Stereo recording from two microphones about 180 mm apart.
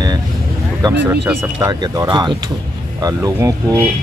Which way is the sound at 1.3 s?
10° right (ahead or behind).